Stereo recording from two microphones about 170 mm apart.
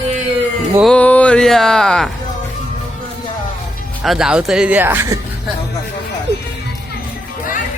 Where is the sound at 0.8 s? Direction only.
5° left (ahead or behind).